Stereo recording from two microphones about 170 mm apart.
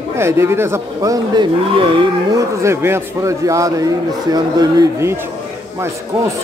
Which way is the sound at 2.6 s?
15° right (ahead or behind).